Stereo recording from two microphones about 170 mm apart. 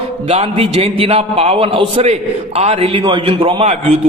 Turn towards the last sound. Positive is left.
turn(degrees=-40)  # may be behind; listen again after turning